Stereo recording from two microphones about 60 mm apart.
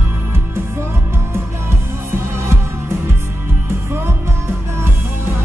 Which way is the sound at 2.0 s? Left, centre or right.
Right.